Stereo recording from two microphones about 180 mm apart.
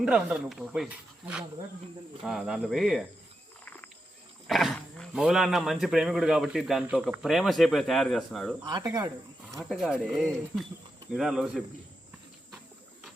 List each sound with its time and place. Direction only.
0.0 s speech: 5° right (ahead or behind)
2.2 s speech: centre (ahead or behind)
4.4 s speech: centre (ahead or behind)
8.6 s speech: 20° right (ahead or behind)
9.6 s speech: centre (ahead or behind)